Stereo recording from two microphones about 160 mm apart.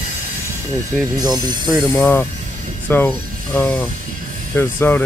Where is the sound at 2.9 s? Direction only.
15° left (ahead or behind).